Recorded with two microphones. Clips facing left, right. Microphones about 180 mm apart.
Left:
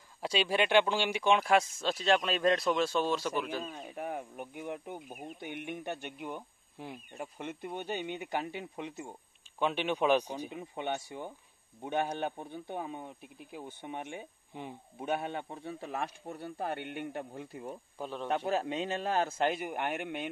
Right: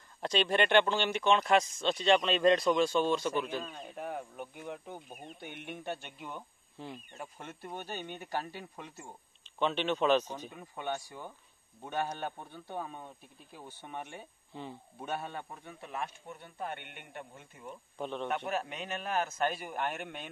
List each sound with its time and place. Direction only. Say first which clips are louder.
0.2 s speech: right 1 dB; 5° left (ahead or behind)
15.6 s speech: left 2 dB; 35° left (ahead or behind)
17.9 s speech: right 3 dB; 5° left (ahead or behind)
18.3 s a man's voice: left 4 dB; 30° left (ahead or behind); by 20.2 s 15° left (ahead or behind)